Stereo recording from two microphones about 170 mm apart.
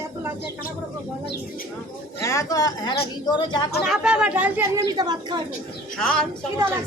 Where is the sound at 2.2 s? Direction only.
20° left (ahead or behind).